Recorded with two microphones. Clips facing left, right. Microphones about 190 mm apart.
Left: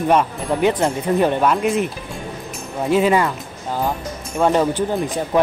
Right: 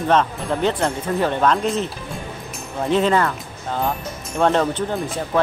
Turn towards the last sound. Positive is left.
turn(degrees=15)  # may be behind; listen again after turning